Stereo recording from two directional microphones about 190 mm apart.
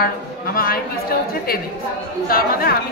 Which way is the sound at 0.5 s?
50° left (ahead or behind).